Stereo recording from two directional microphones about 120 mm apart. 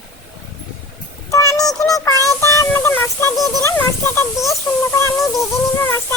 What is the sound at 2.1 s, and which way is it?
Music, 25° left (ahead or behind).